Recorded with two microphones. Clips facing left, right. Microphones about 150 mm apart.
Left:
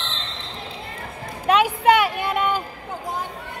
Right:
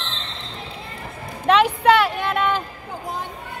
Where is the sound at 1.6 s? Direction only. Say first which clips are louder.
Right 1 dB; 10° left (ahead or behind).